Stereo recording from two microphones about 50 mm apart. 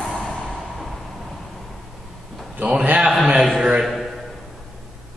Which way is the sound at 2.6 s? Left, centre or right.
Centre.